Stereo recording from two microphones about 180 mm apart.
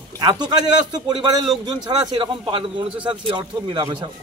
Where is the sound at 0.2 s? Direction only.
25° right (ahead or behind).